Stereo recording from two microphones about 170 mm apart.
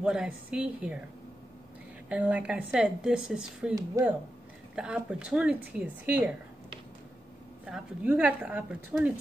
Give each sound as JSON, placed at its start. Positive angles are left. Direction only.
{"t": 0.0, "sound": "speech", "side_deg": -5}
{"t": 2.0, "sound": "speech", "side_deg": -10}
{"t": 3.7, "sound": "speech", "side_deg": -20}
{"t": 4.7, "sound": "speech", "side_deg": -5}
{"t": 7.6, "sound": "speech", "side_deg": -5}